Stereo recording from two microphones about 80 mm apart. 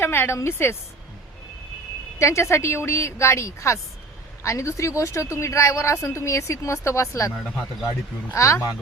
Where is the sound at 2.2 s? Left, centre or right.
Left.